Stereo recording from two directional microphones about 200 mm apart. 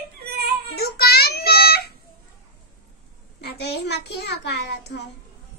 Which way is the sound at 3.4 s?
55° left (ahead or behind).